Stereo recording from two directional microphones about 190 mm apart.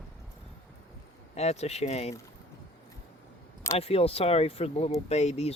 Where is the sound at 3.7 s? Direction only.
30° left (ahead or behind).